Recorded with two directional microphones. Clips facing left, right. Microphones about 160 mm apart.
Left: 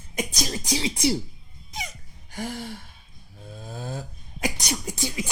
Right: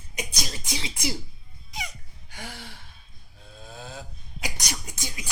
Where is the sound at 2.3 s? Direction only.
45° left (ahead or behind).